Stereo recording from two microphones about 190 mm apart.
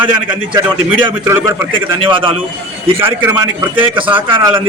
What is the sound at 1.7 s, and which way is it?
Speech, 25° right (ahead or behind).